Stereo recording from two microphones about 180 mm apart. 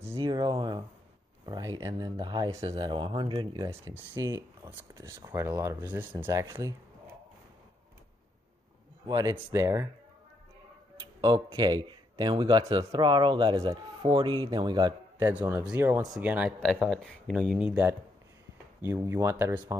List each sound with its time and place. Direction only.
0.0 s a sound: 20° right (ahead or behind)
1.4 s speech: 20° right (ahead or behind)
9.0 s speech: 20° right (ahead or behind)
11.0 s speech: 20° right (ahead or behind)